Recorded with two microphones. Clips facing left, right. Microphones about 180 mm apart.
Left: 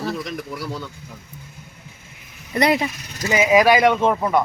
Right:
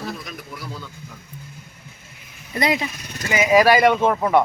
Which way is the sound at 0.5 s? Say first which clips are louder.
Left 5 dB; 70° left (ahead or behind).